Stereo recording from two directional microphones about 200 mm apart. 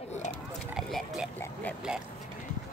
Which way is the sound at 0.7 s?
Centre (ahead or behind).